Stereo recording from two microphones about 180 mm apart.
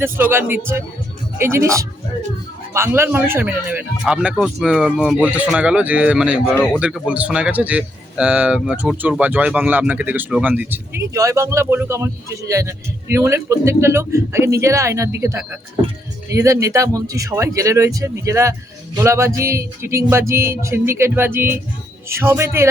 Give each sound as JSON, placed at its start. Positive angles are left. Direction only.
{"t": 0.0, "sound": "speech", "side_deg": -10}